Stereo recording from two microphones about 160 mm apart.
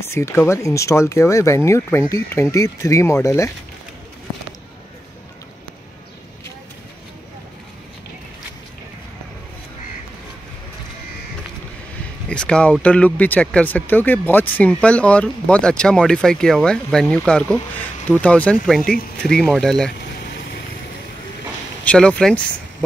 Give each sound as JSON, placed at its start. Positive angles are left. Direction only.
{"t": 0.0, "sound": "speech", "side_deg": 15}
{"t": 12.3, "sound": "speech", "side_deg": 5}
{"t": 21.8, "sound": "speech", "side_deg": 5}